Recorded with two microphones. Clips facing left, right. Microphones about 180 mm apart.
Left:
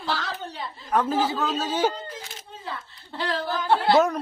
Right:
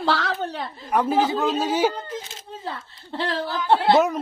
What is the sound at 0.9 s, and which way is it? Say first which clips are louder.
Speech: right 3 dB; 15° right (ahead or behind).